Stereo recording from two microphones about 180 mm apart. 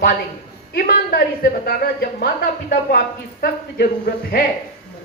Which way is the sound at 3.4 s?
60° left (ahead or behind).